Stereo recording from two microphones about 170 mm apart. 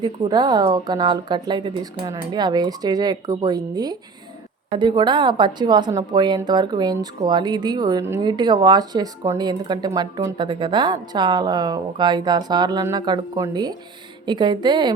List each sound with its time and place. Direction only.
0.0 s a woman's voice: 25° right (ahead or behind)